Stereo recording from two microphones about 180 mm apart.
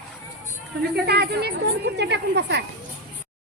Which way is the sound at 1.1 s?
65° right (ahead or behind).